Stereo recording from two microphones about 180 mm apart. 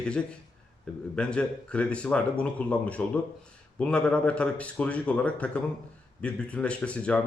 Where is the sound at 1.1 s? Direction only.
5° left (ahead or behind).